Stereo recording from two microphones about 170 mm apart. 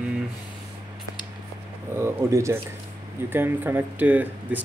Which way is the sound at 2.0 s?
15° right (ahead or behind).